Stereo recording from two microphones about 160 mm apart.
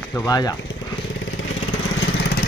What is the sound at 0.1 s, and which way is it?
Speech, 20° left (ahead or behind).